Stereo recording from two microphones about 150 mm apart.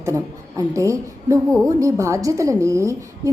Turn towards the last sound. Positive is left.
turn(degrees=-20)  # may be behind; listen again after turning